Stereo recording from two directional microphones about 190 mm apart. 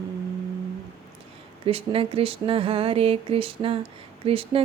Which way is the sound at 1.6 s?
30° right (ahead or behind).